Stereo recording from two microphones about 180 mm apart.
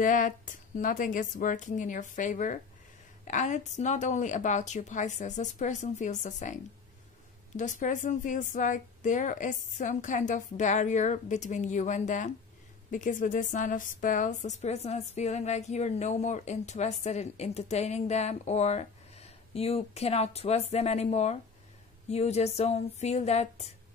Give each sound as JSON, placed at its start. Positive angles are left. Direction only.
{"t": 0.0, "sound": "a woman's voice", "side_deg": 45}